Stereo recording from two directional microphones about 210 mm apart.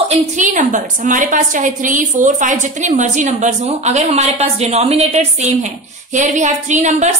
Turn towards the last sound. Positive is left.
turn(degrees=-35)  # may be behind; listen again after turning